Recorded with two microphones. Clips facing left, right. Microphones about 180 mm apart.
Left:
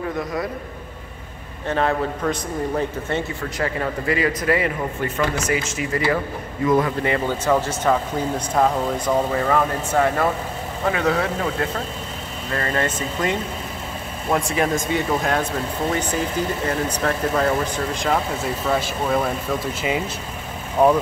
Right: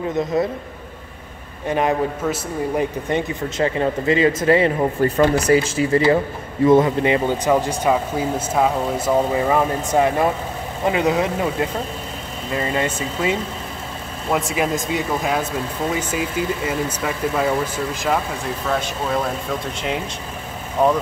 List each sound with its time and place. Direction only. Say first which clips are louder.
0.2 s a man's voice: right 9 dB; 25° right (ahead or behind)
1.7 s a man's voice: right 2 dB; 15° right (ahead or behind); by 20.0 s 5° left (ahead or behind)